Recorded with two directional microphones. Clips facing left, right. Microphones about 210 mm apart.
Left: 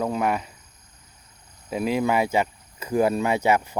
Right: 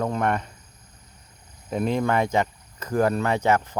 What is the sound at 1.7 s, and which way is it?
Speech, 5° left (ahead or behind).